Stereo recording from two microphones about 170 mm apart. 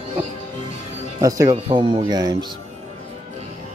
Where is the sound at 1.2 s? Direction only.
20° right (ahead or behind).